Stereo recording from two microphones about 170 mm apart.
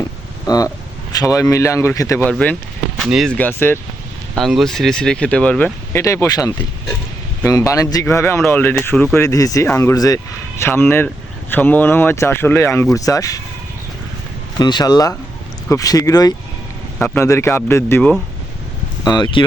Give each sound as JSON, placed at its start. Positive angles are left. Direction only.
{"t": 0.4, "sound": "vehicle", "side_deg": 20}
{"t": 1.1, "sound": "speech", "side_deg": 20}
{"t": 14.6, "sound": "speech", "side_deg": 25}
{"t": 19.0, "sound": "speech", "side_deg": 25}